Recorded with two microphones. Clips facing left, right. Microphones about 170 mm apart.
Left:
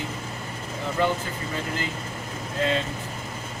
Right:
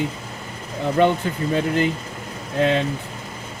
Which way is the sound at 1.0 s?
65° right (ahead or behind).